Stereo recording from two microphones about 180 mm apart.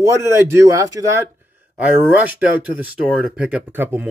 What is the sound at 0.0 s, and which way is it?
Speech, 15° right (ahead or behind).